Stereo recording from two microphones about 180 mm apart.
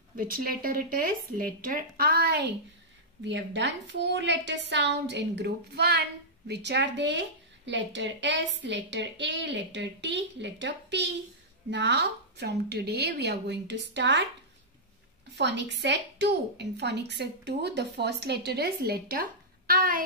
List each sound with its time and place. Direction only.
0.1 s speech: 55° right (ahead or behind)
3.3 s a woman's voice: 75° right (ahead or behind)
15.3 s a woman's voice: 75° right (ahead or behind); by 20.0 s 50° right (ahead or behind)